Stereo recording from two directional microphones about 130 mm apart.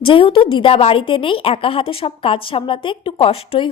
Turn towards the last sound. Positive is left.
turn(degrees=45)  # may be behind; listen again after turning